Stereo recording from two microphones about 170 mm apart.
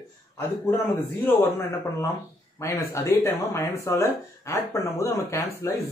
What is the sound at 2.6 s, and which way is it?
Speech, 15° left (ahead or behind).